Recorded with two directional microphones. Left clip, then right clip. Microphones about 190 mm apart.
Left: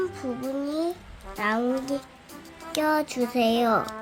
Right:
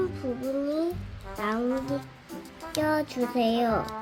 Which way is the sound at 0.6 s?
15° left (ahead or behind).